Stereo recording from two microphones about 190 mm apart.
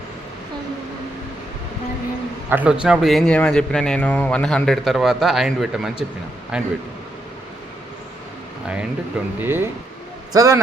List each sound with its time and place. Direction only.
2.5 s a man's voice: 5° right (ahead or behind)
9.4 s speech: 10° right (ahead or behind)